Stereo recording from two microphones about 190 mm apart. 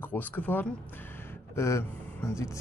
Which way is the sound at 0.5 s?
10° left (ahead or behind).